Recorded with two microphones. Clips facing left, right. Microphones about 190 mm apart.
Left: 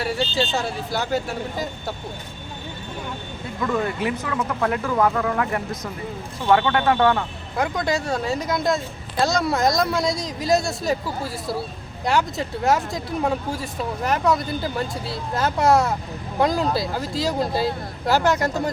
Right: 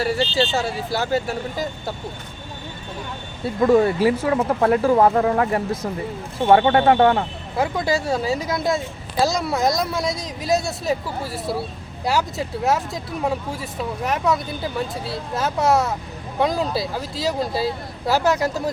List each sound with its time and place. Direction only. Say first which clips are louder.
0.0 s speech: right 3 dB; centre (ahead or behind)
3.6 s speech: right 8 dB; 30° right (ahead or behind)
7.6 s speech: right 2 dB; 5° right (ahead or behind)